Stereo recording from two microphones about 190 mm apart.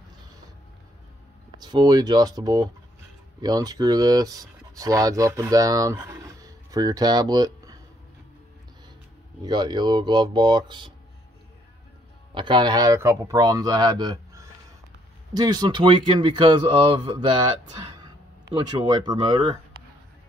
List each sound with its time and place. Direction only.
1.6 s speech: 20° right (ahead or behind)
9.4 s speech: 25° right (ahead or behind)
12.4 s speech: 25° right (ahead or behind)
18.5 s speech: 25° right (ahead or behind)